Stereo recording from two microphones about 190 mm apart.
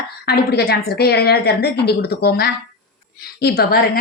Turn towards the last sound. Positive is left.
turn(degrees=55)  # may be behind; listen again after turning